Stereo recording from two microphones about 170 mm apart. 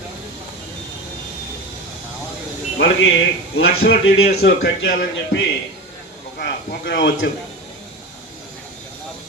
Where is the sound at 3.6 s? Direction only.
65° left (ahead or behind); by 4.9 s 85° left.